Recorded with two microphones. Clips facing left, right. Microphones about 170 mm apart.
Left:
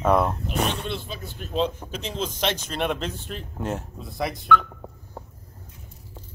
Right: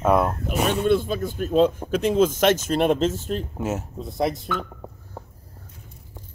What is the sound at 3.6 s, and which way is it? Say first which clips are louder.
Speech: right 3 dB; 5° right (ahead or behind).